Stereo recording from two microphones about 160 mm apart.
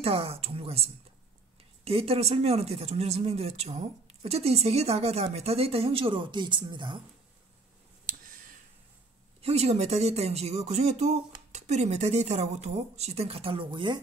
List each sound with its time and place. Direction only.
0.0 s speech: 40° right (ahead or behind)
8.1 s a sound: 55° right (ahead or behind)
9.4 s speech: 40° right (ahead or behind)